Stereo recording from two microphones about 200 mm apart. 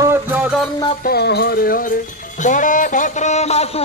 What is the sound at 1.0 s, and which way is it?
Music, 55° left (ahead or behind).